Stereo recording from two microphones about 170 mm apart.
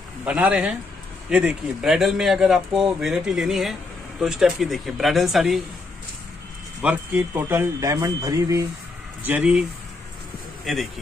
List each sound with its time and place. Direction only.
0.2 s speech: 5° right (ahead or behind)
6.8 s speech: 10° right (ahead or behind)
9.2 s a man's voice: 10° right (ahead or behind)